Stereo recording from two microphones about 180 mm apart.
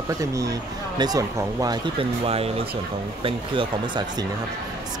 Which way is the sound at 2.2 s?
35° right (ahead or behind).